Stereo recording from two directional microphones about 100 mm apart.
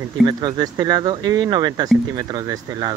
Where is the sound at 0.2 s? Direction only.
40° right (ahead or behind).